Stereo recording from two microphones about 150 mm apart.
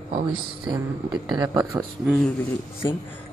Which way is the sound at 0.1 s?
35° right (ahead or behind).